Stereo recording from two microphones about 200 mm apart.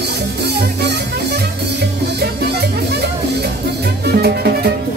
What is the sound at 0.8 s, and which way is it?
Music, 55° right (ahead or behind).